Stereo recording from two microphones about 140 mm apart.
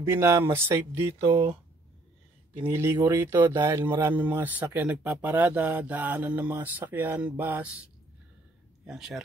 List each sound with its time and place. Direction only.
0.0 s speech: 20° right (ahead or behind)
2.5 s speech: 15° right (ahead or behind)
8.8 s speech: 5° right (ahead or behind)